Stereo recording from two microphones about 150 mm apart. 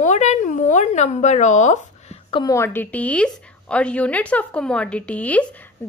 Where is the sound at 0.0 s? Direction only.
50° left (ahead or behind).